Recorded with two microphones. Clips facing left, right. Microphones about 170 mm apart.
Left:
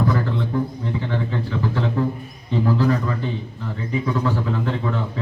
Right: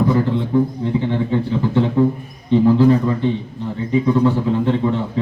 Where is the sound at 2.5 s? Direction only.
25° right (ahead or behind).